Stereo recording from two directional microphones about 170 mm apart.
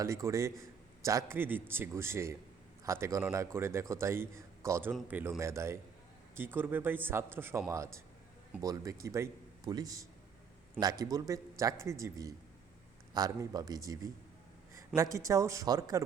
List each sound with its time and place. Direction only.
0.0 s a man's voice: 15° right (ahead or behind)